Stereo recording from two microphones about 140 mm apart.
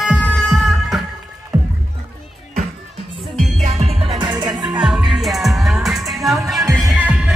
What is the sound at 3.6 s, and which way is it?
Music, 45° right (ahead or behind).